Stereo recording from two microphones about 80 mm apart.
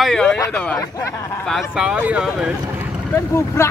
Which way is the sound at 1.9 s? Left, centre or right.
Centre.